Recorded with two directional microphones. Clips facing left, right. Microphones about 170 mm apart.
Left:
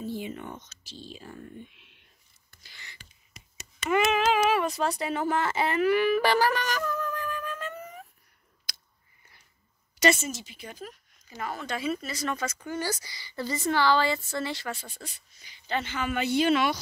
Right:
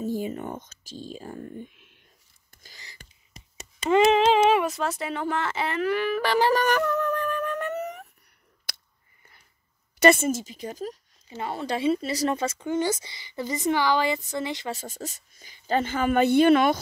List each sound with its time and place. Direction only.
0.0 s speech: 40° right (ahead or behind)
2.5 s a sound: 40° right (ahead or behind); by 4.6 s 25° right (ahead or behind)
4.6 s speech: centre (ahead or behind)
6.5 s a sound: 55° right (ahead or behind)
9.9 s a woman's voice: 55° right (ahead or behind); by 14.8 s 20° right (ahead or behind)
14.8 s a woman's voice: 45° right (ahead or behind)